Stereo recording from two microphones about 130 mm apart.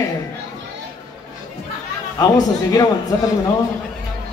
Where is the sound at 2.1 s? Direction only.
30° left (ahead or behind).